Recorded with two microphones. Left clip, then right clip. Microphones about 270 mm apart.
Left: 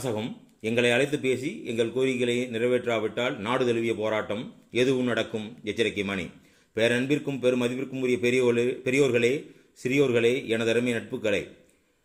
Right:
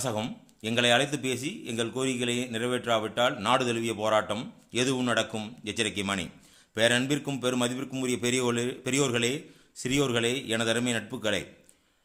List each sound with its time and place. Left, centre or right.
0.0 s a man's voice: centre